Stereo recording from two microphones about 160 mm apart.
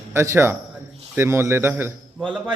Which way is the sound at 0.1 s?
15° right (ahead or behind).